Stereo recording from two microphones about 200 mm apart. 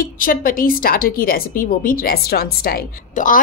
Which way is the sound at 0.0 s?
45° left (ahead or behind).